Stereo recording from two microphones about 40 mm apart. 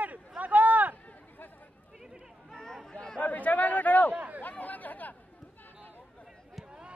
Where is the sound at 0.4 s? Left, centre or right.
Right.